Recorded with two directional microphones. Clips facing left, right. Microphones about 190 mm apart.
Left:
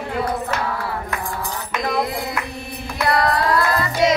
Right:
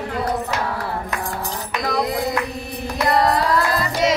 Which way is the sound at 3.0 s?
20° right (ahead or behind).